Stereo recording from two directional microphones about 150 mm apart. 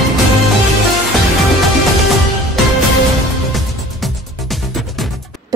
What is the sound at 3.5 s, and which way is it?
Music, centre (ahead or behind).